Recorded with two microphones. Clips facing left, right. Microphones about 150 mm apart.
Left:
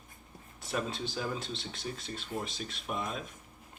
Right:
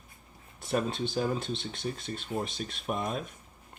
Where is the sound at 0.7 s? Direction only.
50° right (ahead or behind).